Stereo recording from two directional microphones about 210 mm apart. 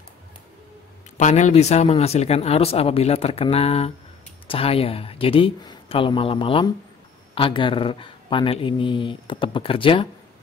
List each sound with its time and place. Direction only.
1.1 s speech: 35° left (ahead or behind)